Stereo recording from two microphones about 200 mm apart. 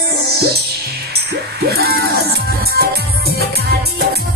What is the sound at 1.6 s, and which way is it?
Music, 50° right (ahead or behind).